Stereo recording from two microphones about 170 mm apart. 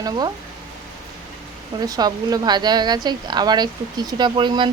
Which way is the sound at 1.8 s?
25° right (ahead or behind).